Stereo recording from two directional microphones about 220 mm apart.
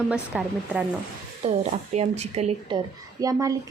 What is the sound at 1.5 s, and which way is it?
A woman's voice, 30° right (ahead or behind).